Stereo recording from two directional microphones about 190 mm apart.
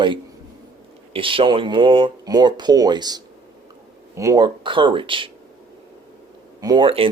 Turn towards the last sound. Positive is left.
turn(degrees=-25)  # may be behind; listen again after turning